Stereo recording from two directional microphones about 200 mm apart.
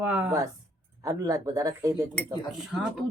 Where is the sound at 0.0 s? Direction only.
5° right (ahead or behind).